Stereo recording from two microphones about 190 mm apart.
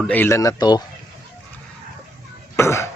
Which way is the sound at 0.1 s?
10° left (ahead or behind).